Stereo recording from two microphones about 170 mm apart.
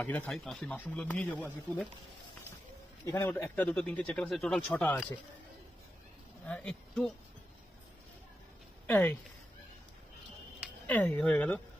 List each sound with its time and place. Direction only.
0.0 s speech: 10° left (ahead or behind)
3.1 s speech: 15° left (ahead or behind)
6.4 s speech: 10° left (ahead or behind)
8.8 s speech: 10° left (ahead or behind)
10.9 s speech: 10° left (ahead or behind)